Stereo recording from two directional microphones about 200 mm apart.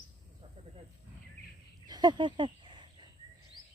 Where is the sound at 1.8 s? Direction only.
20° right (ahead or behind).